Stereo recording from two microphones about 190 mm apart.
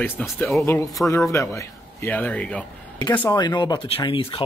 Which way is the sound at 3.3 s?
20° left (ahead or behind).